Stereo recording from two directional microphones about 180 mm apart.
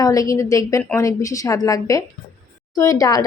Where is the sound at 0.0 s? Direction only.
20° left (ahead or behind).